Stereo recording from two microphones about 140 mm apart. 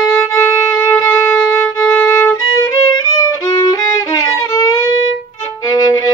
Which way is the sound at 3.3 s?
25° left (ahead or behind).